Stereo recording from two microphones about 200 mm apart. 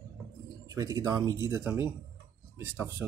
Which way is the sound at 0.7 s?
15° right (ahead or behind).